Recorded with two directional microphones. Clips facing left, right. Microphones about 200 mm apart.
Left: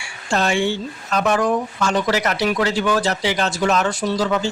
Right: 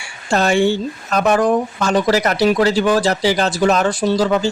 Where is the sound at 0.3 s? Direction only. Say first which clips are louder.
Right 5 dB; 40° right (ahead or behind).